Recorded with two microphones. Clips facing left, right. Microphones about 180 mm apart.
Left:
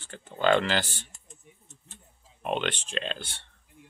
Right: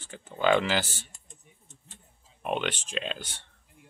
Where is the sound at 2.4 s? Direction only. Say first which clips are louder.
Left 1 dB; 5° right (ahead or behind).